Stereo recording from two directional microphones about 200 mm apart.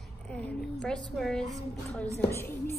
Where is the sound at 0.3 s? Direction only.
5° left (ahead or behind).